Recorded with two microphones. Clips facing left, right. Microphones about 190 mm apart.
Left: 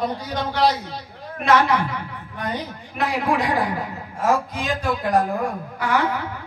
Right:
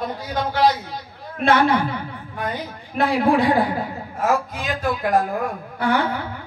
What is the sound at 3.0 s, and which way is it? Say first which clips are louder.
Speech: right 4 dB; 30° right (ahead or behind).